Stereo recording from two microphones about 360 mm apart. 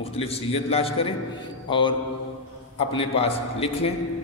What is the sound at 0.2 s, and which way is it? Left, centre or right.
A man's voice, centre.